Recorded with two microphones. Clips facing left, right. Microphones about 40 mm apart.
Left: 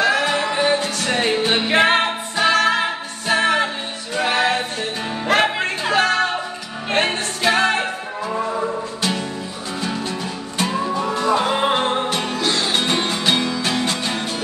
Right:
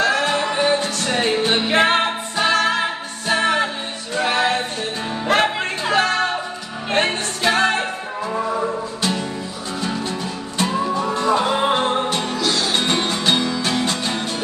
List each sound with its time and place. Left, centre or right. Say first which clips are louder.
0.0 s music: even; centre
10.6 s music: right 1 dB; centre
12.4 s music: even; left
12.7 s music: even; centre